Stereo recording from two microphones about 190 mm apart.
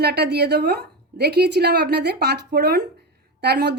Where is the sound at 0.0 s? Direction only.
60° right (ahead or behind).